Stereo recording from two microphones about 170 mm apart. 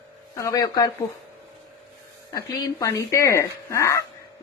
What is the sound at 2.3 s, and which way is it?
Speech, 20° left (ahead or behind).